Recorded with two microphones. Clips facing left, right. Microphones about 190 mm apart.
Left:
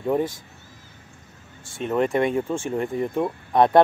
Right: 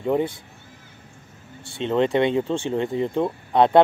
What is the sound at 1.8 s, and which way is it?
Speech, 25° right (ahead or behind).